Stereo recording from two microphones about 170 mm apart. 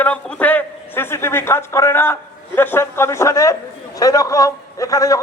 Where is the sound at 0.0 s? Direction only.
10° left (ahead or behind).